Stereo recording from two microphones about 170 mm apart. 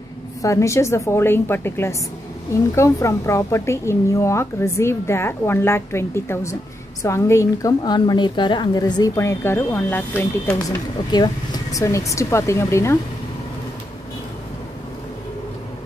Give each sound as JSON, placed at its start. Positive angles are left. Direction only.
{"t": 0.4, "sound": "a woman's voice", "side_deg": 20}